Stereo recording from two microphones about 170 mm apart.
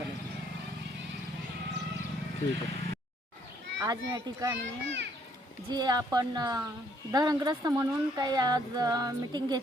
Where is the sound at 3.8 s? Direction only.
20° right (ahead or behind).